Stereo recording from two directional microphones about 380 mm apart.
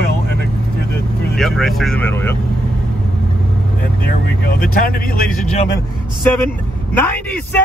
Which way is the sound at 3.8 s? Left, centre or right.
Left.